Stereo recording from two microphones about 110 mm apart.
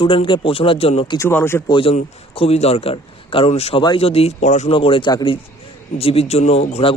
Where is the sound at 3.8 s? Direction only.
50° left (ahead or behind); by 4.7 s 90° left.